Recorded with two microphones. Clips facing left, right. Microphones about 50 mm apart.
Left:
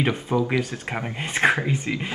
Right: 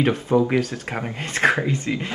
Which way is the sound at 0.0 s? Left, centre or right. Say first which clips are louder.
Right 4 dB; centre.